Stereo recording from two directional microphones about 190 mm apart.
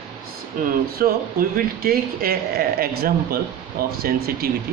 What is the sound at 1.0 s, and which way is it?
Speech, 50° right (ahead or behind).